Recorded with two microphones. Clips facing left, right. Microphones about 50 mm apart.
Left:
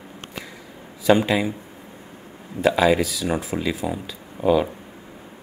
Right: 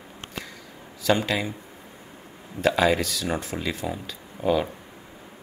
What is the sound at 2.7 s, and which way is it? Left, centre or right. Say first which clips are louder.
Speech: left 3 dB; centre.